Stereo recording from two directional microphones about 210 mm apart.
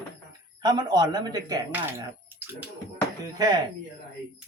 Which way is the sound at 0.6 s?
20° right (ahead or behind).